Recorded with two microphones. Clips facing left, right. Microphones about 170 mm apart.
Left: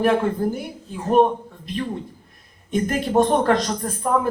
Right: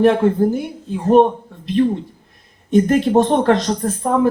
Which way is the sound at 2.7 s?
25° right (ahead or behind).